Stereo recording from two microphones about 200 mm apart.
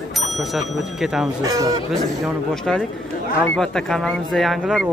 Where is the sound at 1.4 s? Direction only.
15° right (ahead or behind).